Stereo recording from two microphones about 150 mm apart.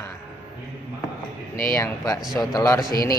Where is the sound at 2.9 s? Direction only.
80° left.